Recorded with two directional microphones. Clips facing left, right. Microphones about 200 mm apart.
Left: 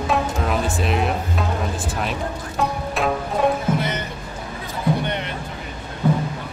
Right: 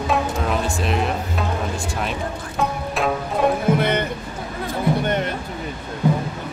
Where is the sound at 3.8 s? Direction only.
60° right (ahead or behind).